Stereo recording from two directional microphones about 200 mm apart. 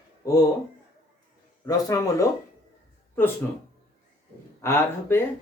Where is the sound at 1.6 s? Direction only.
15° left (ahead or behind).